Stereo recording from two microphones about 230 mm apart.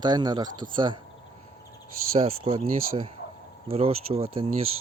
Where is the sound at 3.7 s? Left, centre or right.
Right.